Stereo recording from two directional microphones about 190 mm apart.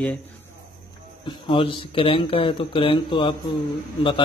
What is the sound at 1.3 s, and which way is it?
Speech, 25° left (ahead or behind).